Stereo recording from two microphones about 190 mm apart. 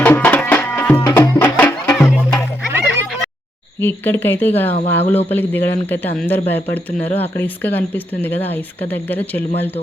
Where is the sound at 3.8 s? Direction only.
10° left (ahead or behind).